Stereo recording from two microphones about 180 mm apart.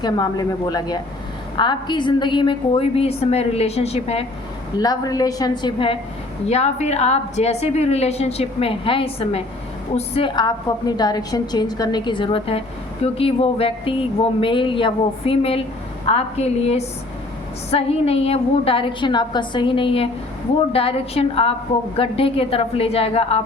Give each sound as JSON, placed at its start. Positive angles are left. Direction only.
{"t": 0.0, "sound": "a woman's voice", "side_deg": 20}
{"t": 4.8, "sound": "a woman's voice", "side_deg": 20}
{"t": 6.5, "sound": "a woman's voice", "side_deg": 35}